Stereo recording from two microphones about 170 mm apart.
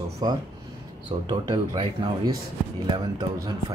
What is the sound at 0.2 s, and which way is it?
Speech, 25° right (ahead or behind).